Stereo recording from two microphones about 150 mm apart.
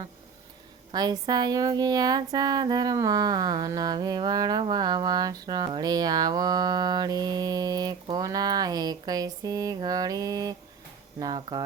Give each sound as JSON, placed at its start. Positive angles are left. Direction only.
{"t": 0.9, "sound": "speech", "side_deg": -25}